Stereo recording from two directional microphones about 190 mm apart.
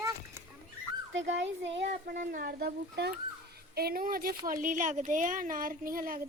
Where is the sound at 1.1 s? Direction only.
80° right.